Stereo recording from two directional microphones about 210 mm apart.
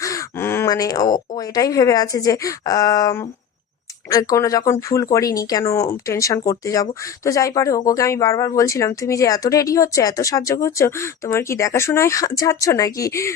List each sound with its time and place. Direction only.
0.0 s speech: 15° left (ahead or behind)